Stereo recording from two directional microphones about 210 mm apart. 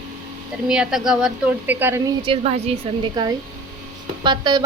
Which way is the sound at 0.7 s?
5° right (ahead or behind).